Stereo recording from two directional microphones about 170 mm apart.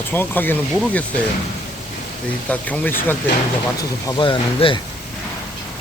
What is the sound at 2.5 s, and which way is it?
Speech, 10° left (ahead or behind).